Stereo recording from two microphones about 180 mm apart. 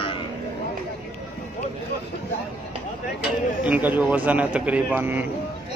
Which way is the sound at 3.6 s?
10° right (ahead or behind).